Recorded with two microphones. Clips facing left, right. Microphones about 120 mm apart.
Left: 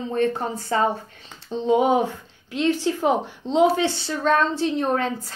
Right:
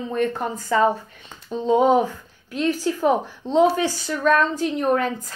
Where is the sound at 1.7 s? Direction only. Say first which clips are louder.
Right 2 dB; 15° left (ahead or behind).